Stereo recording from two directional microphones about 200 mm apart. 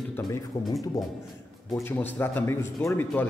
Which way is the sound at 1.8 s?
10° left (ahead or behind).